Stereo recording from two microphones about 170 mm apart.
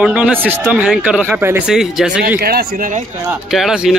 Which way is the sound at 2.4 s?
65° right (ahead or behind).